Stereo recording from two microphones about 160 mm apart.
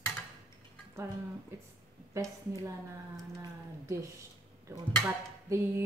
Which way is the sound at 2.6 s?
20° right (ahead or behind).